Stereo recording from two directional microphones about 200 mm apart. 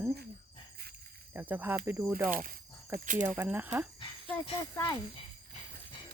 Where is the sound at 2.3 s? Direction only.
45° right (ahead or behind).